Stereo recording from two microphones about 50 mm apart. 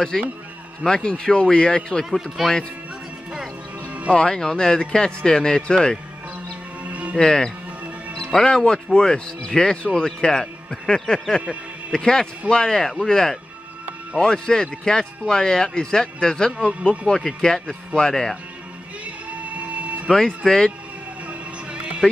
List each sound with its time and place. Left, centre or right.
0.1 s speech: centre
2.0 s speech: centre
4.1 s speech: centre
6.8 s music: right
7.2 s speech: centre
19.3 s printer: right
20.1 s speech: centre
21.3 s music: right